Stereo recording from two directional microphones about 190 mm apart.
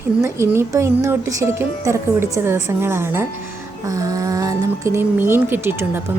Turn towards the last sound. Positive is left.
turn(degrees=-10)  # may be behind; listen again after turning